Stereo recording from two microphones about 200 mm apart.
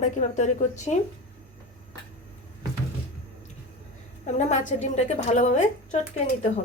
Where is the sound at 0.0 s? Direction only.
35° left (ahead or behind).